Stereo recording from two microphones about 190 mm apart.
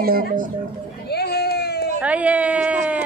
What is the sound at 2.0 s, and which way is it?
Speech, 5° right (ahead or behind).